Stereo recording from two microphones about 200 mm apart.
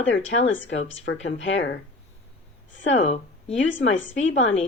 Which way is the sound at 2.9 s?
30° left (ahead or behind).